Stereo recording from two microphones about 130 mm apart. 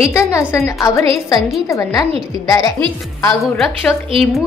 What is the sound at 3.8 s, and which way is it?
Speech, 15° left (ahead or behind).